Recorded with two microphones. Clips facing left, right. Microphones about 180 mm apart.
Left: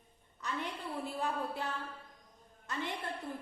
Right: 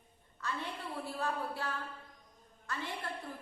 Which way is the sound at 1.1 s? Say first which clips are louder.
Right 1 dB; 20° left (ahead or behind).